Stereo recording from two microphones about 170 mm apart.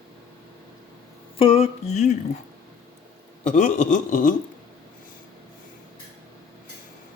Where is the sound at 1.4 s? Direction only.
35° left (ahead or behind).